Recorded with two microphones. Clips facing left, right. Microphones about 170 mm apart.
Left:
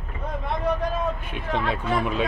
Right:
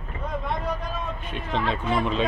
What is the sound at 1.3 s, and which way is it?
Speech, 10° left (ahead or behind).